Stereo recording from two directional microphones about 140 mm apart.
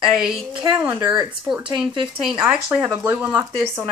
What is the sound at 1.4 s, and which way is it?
Speech, 5° right (ahead or behind).